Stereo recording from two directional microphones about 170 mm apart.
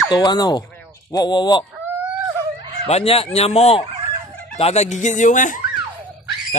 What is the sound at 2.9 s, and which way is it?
Speech, 35° left (ahead or behind).